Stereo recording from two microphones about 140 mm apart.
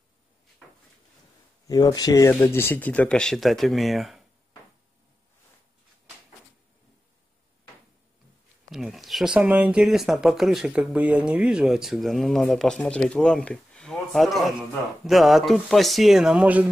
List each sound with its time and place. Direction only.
1.7 s speech: 25° left (ahead or behind); by 4.2 s centre (ahead or behind)
8.7 s speech: centre (ahead or behind)